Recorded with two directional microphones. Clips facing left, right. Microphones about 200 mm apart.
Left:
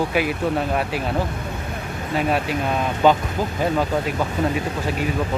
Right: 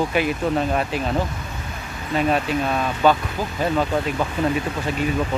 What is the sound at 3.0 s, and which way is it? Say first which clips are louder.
Speech: left 1 dB; 20° left (ahead or behind).